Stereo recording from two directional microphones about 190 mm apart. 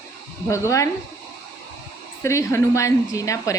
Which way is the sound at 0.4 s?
15° left (ahead or behind).